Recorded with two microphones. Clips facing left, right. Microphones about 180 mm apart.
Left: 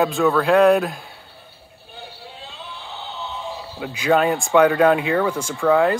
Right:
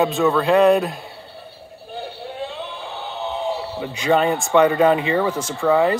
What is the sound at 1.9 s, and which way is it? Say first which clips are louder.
Synthetic singing: right 8 dB; 55° right (ahead or behind).